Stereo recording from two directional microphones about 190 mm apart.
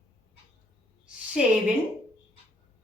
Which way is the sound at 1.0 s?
5° right (ahead or behind).